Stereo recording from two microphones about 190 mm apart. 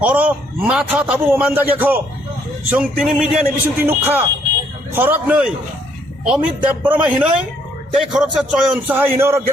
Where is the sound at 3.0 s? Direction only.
5° right (ahead or behind).